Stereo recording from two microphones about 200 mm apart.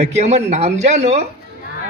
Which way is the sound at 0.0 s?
35° right (ahead or behind).